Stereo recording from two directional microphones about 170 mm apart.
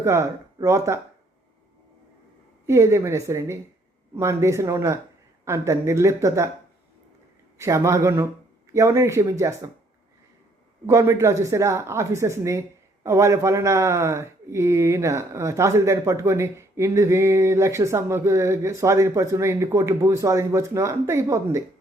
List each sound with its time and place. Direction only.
0.0 s speech: 15° right (ahead or behind)
2.6 s speech: 15° right (ahead or behind)
7.6 s speech: 15° right (ahead or behind)
10.8 s speech: 15° right (ahead or behind)